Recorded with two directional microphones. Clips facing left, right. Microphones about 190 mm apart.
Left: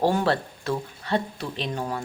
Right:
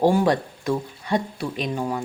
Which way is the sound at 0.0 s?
10° right (ahead or behind).